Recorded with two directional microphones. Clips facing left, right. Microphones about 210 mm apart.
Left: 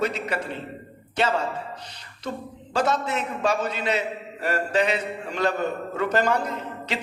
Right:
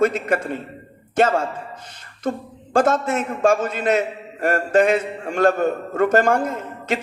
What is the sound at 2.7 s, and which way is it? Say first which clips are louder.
A man's voice: right 6 dB; 50° right (ahead or behind).